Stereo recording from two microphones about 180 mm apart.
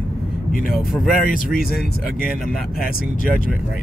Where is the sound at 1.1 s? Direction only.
50° left (ahead or behind).